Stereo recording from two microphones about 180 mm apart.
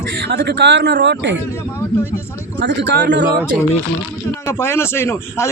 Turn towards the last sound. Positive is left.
turn(degrees=15)  # may be behind; listen again after turning